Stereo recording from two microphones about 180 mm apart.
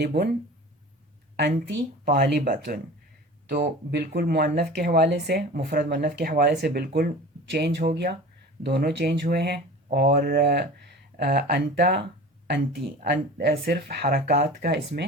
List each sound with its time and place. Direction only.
1.4 s speech: 60° right (ahead or behind)
7.5 s speech: 70° right (ahead or behind)